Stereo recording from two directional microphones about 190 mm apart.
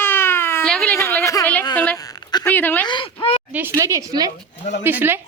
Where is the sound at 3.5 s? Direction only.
15° right (ahead or behind).